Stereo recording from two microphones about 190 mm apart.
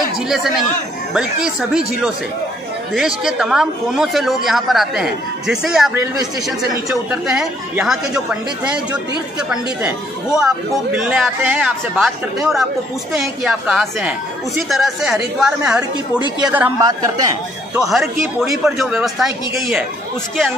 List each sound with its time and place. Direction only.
1.1 s speech: 5° right (ahead or behind)
2.9 s a woman's voice: centre (ahead or behind); by 17.8 s 20° right (ahead or behind)
17.8 s speech: centre (ahead or behind)